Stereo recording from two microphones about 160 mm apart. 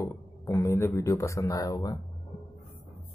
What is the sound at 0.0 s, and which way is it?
Speech, 15° left (ahead or behind).